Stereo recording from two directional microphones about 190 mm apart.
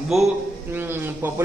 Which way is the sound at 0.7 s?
10° right (ahead or behind).